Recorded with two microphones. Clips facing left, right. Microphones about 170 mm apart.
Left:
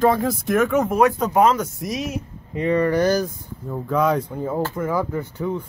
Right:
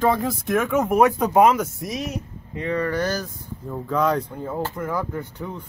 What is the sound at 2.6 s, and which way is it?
Speech, 15° left (ahead or behind).